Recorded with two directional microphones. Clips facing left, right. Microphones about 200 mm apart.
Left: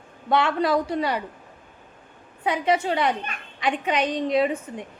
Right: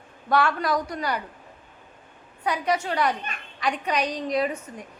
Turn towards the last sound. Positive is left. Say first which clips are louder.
# left 4 dB
turn(degrees=25)  # may be behind; listen again after turning